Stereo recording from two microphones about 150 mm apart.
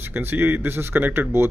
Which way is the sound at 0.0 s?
15° right (ahead or behind).